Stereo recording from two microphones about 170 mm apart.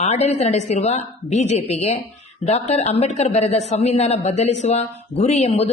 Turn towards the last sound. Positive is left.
turn(degrees=35)  # may be behind; listen again after turning